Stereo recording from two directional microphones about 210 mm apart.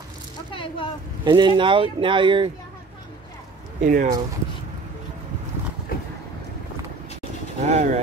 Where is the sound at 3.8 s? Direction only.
40° right (ahead or behind).